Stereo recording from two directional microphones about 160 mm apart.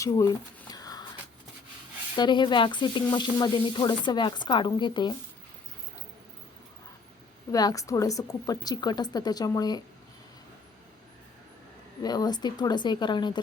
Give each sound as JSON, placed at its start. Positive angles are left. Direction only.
{"t": 0.0, "sound": "speech", "side_deg": 20}
{"t": 0.7, "sound": "a sound", "side_deg": 25}
{"t": 2.1, "sound": "speech", "side_deg": 30}
{"t": 7.5, "sound": "speech", "side_deg": 20}
{"t": 12.0, "sound": "speech", "side_deg": 25}